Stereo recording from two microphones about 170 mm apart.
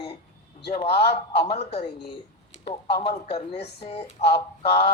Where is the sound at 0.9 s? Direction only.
70° left (ahead or behind).